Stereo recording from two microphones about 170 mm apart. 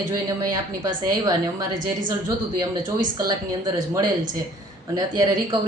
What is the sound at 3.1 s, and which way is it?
Speech, 20° right (ahead or behind).